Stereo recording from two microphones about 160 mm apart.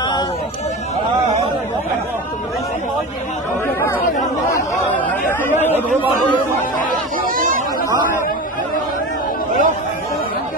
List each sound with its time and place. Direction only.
3.8 s chatter: 15° left (ahead or behind)
6.9 s chatter: 60° right (ahead or behind)
9.5 s chatter: 55° right (ahead or behind)